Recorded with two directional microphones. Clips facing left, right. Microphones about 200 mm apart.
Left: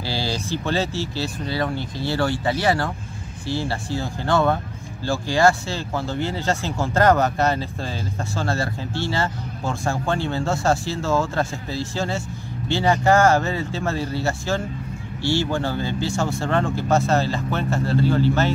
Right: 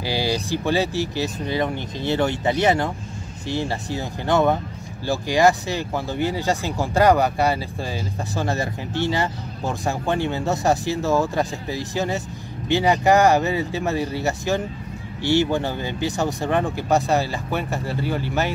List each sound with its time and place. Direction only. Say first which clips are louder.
0.0 s speech: right 3 dB; 15° right (ahead or behind)